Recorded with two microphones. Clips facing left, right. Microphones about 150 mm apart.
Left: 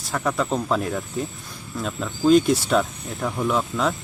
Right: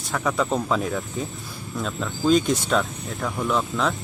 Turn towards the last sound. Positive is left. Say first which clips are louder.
# left 1 dB
turn(degrees=5)  # may be behind; listen again after turning